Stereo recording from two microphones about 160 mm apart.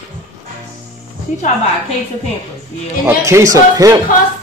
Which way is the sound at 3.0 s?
20° right (ahead or behind).